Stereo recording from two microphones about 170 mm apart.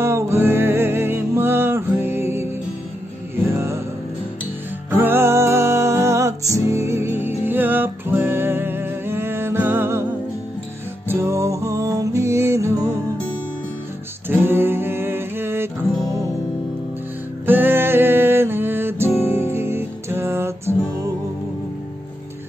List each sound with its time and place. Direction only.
0.0 s music: 15° right (ahead or behind)
4.9 s music: 15° right (ahead or behind)
11.1 s music: 15° right (ahead or behind)
14.3 s music: 15° right (ahead or behind)
17.5 s music: 10° right (ahead or behind)